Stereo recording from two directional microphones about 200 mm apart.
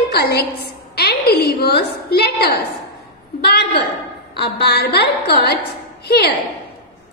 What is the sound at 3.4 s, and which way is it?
A woman's voice, 55° left (ahead or behind).